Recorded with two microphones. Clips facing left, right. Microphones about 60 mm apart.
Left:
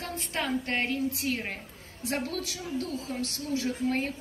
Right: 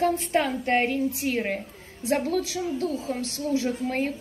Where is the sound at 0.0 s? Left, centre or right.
Right.